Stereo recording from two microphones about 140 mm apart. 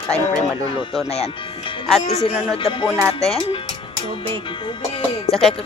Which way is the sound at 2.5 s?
40° left (ahead or behind).